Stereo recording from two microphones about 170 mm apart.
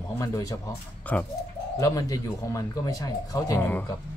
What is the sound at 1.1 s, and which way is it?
Speech, 10° left (ahead or behind).